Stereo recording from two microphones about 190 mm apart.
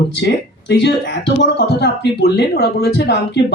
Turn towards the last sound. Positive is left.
turn(degrees=65)  # may be behind; listen again after turning